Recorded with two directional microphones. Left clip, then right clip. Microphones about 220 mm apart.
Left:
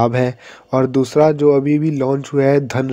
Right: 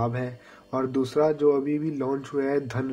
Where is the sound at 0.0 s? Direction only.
35° left (ahead or behind).